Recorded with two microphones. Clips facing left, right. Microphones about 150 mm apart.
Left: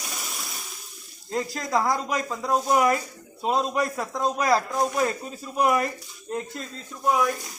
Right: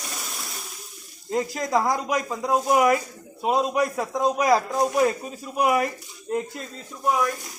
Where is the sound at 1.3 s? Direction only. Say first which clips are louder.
Right 3 dB; 15° right (ahead or behind).